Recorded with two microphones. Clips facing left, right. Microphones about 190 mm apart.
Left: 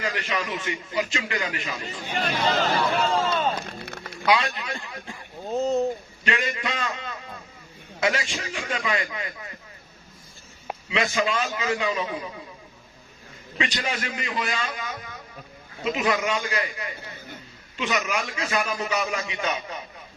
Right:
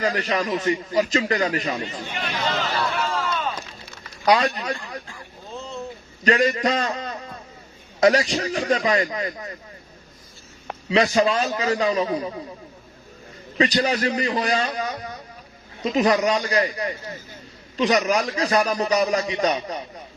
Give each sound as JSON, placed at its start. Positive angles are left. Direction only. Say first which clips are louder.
{"t": 0.0, "sound": "a man's voice", "louder": "right 6 dB", "side_deg": -40}
{"t": 2.1, "sound": "speech", "louder": "left 3 dB", "side_deg": 40}
{"t": 3.3, "sound": "a sound", "louder": "left 3 dB", "side_deg": 60}
{"t": 4.3, "sound": "a man's voice", "louder": "right 4 dB", "side_deg": -40}
{"t": 5.5, "sound": "boat", "louder": "left 11 dB", "side_deg": 40}
{"t": 6.2, "sound": "a man's voice", "louder": "right 9 dB", "side_deg": -40}
{"t": 10.8, "sound": "a man's voice", "louder": "right 6 dB", "side_deg": -40}
{"t": 13.6, "sound": "a man's voice", "louder": "right 8 dB", "side_deg": -40}